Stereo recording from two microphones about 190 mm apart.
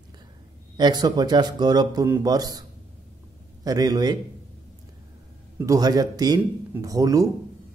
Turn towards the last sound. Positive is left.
turn(degrees=-15)  # may be behind; listen again after turning